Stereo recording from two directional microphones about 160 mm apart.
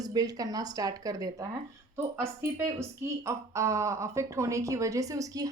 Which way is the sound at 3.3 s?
20° right (ahead or behind).